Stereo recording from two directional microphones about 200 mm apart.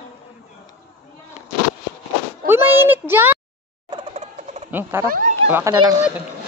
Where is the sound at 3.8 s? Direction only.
25° right (ahead or behind).